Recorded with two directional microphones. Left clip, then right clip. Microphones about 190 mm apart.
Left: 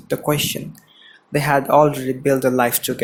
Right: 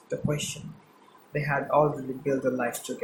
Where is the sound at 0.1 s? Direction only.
45° left (ahead or behind).